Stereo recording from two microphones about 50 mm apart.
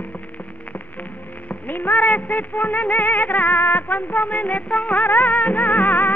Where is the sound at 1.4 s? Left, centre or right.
Left.